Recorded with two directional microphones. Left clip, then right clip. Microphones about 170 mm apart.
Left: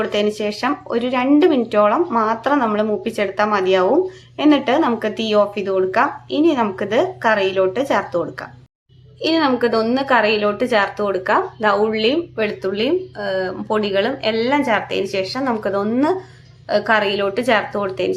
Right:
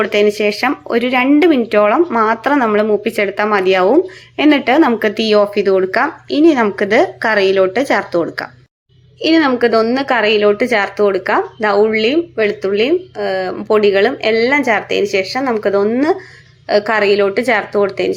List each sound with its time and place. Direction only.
0.0 s a woman's voice: 15° right (ahead or behind)